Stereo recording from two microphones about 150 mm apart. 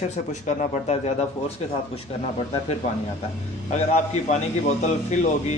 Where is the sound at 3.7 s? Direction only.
50° left (ahead or behind).